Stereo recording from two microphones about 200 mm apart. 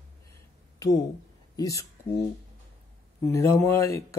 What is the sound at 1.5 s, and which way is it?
Speech, 15° left (ahead or behind).